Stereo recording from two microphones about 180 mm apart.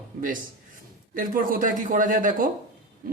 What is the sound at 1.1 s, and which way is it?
Speech, 50° right (ahead or behind).